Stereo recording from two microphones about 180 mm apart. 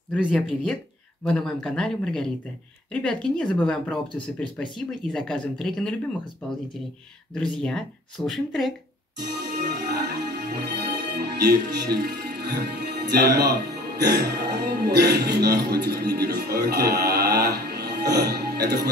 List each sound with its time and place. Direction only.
0.3 s speech: 5° left (ahead or behind)
7.5 s speech: 5° left (ahead or behind)
9.5 s music: 65° right (ahead or behind)
14.1 s speech: 65° right (ahead or behind)